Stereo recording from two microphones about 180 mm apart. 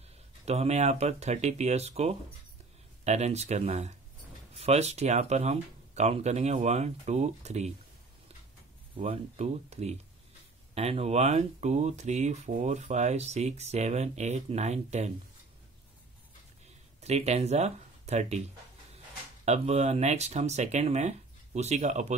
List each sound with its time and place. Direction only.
0.5 s speech: 35° right (ahead or behind)
8.9 s speech: 30° right (ahead or behind)
17.0 s speech: 35° right (ahead or behind)
19.4 s speech: 35° right (ahead or behind)